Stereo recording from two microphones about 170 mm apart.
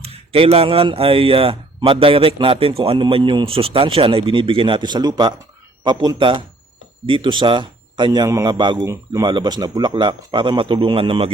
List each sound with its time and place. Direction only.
0.0 s speech: 35° right (ahead or behind)